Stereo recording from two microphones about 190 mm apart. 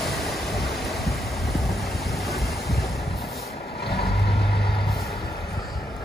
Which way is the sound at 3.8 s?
55° left (ahead or behind).